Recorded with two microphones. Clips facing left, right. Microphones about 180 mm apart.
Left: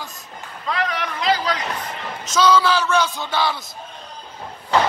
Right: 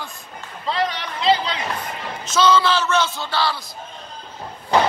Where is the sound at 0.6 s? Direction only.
30° right (ahead or behind).